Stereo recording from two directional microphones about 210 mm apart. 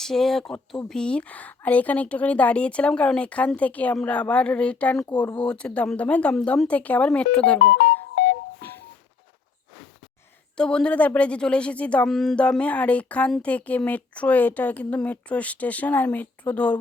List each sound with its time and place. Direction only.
0.0 s speech: centre (ahead or behind)
8.1 s telephone dialing: 55° left (ahead or behind)
8.5 s a sound: 10° left (ahead or behind)
10.6 s speech: 5° left (ahead or behind)